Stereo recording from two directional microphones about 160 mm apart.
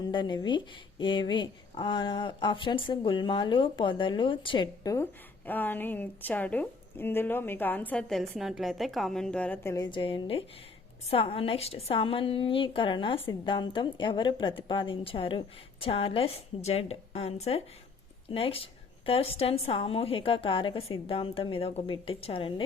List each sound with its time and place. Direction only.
0.0 s speech: 30° left (ahead or behind)
5.5 s a woman's voice: 10° left (ahead or behind)
9.7 s a woman's voice: 30° left (ahead or behind)